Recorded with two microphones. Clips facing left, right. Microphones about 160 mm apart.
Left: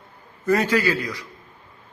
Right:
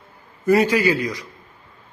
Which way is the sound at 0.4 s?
10° right (ahead or behind).